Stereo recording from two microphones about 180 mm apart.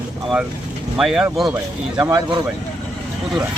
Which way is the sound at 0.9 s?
5° right (ahead or behind).